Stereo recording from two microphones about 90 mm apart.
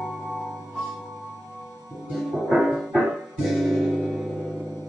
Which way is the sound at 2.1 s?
Centre (ahead or behind).